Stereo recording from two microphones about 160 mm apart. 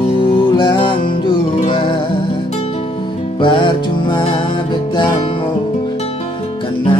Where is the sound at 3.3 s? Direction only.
30° left (ahead or behind).